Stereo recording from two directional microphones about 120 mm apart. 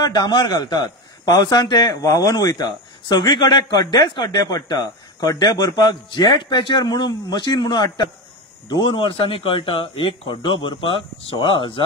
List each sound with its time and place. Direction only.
0.0 s speech: 35° left (ahead or behind)